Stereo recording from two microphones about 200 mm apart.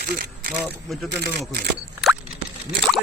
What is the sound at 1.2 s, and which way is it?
Speech, 55° right (ahead or behind).